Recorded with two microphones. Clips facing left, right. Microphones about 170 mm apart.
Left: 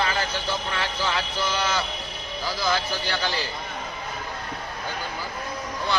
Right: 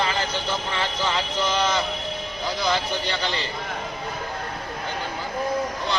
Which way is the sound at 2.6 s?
20° right (ahead or behind).